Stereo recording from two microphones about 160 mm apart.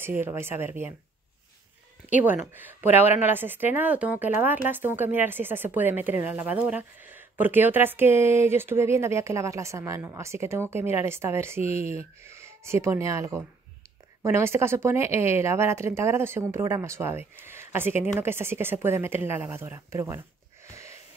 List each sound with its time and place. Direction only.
0.2 s speech: 15° right (ahead or behind)
2.5 s speech: 10° right (ahead or behind)
20.7 s wheeze: 20° right (ahead or behind)